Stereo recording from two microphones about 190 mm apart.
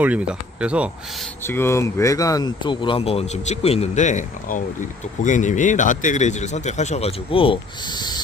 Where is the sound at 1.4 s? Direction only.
10° left (ahead or behind).